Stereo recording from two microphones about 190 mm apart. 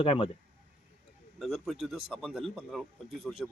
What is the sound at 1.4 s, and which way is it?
A man's voice, centre (ahead or behind).